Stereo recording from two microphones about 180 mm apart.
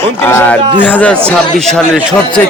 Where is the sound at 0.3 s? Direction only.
10° left (ahead or behind).